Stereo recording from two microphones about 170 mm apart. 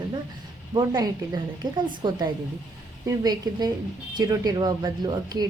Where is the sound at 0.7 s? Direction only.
25° right (ahead or behind).